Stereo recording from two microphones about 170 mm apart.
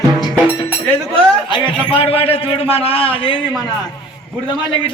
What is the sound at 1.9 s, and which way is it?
A man's voice, 35° left (ahead or behind).